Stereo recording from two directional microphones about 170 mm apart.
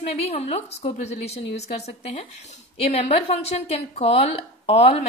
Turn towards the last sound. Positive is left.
turn(degrees=35)  # may be behind; listen again after turning